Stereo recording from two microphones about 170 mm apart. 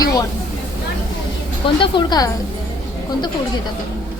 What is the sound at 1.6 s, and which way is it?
Speech, 30° left (ahead or behind).